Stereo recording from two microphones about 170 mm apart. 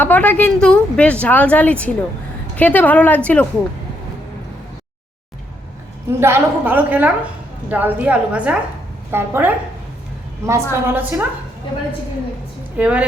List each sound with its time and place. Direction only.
0.0 s a woman's voice: 10° left (ahead or behind)
6.1 s a woman's voice: 15° right (ahead or behind)
12.7 s a woman's voice: 5° right (ahead or behind)